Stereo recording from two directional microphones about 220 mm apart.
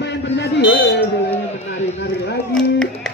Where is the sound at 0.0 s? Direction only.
50° left (ahead or behind).